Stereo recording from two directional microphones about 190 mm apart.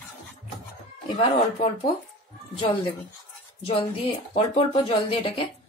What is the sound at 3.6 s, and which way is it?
Speech, 25° left (ahead or behind).